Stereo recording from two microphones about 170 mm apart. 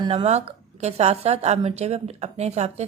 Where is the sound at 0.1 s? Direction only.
40° right (ahead or behind).